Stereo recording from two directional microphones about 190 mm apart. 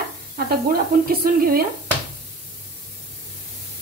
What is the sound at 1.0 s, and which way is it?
Speech, 50° right (ahead or behind).